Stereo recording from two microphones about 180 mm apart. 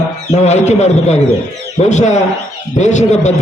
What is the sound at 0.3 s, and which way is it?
A man's voice, 40° left (ahead or behind).